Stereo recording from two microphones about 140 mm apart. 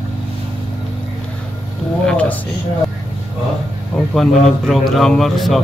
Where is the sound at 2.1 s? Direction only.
10° left (ahead or behind).